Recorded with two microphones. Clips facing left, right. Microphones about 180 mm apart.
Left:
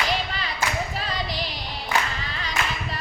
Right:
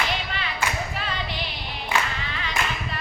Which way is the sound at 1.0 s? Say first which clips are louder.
Left 1 dB; 35° left (ahead or behind).